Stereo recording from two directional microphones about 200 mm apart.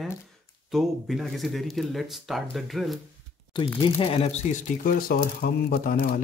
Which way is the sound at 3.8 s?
25° left (ahead or behind).